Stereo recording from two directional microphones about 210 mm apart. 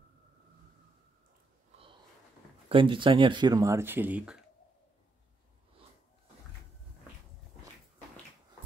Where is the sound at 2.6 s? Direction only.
25° right (ahead or behind); by 4.4 s 5° right (ahead or behind).